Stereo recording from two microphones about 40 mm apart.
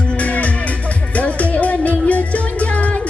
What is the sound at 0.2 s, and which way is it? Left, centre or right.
Music, left.